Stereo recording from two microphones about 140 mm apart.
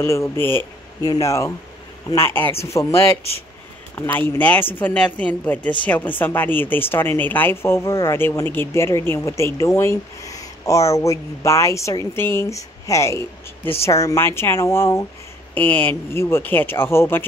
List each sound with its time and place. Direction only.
0.0 s speech: 20° left (ahead or behind)